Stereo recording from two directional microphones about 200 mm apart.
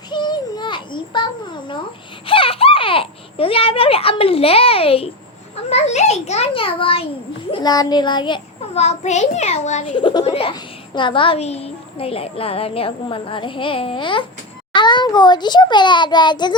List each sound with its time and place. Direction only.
0.1 s a sound: 20° left (ahead or behind)
2.2 s a child's voice: 25° left (ahead or behind)
9.9 s a child's voice: 25° left (ahead or behind)